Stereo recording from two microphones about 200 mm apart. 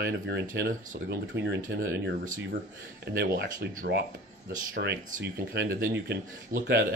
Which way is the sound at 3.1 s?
50° right (ahead or behind).